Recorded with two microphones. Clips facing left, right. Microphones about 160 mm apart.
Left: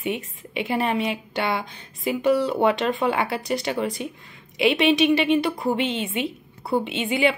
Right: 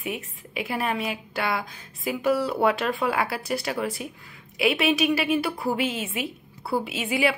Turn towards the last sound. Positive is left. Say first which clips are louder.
# left 3 dB
turn(degrees=-5)  # may be behind; listen again after turning